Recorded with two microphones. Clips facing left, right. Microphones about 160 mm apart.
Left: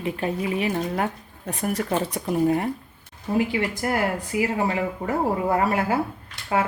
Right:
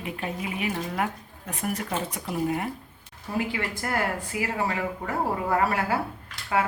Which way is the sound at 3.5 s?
20° left (ahead or behind).